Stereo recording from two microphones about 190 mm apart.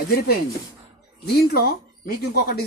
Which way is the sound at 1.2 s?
55° left (ahead or behind).